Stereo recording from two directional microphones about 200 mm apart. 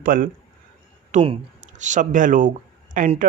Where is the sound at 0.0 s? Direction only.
45° right (ahead or behind).